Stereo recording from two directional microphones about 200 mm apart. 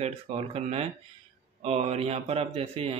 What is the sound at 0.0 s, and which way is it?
Speech, 30° right (ahead or behind).